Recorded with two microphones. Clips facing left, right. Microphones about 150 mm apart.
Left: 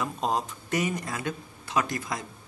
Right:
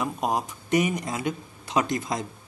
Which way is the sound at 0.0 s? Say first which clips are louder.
Right 2 dB; 15° right (ahead or behind).